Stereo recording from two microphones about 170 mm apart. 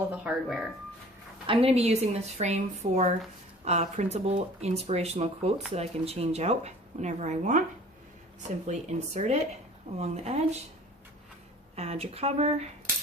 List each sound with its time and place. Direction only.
0.1 s speech: 5° right (ahead or behind)
1.5 s speech: 35° right (ahead or behind)
8.6 s speech: 40° right (ahead or behind)
11.8 s speech: 40° right (ahead or behind)